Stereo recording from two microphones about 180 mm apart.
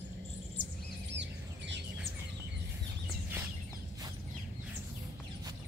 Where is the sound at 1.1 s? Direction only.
75° right (ahead or behind).